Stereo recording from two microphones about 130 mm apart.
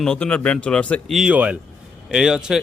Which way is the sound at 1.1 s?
5° right (ahead or behind).